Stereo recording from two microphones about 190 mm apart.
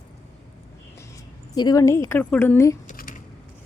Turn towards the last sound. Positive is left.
turn(degrees=50)  # may be behind; listen again after turning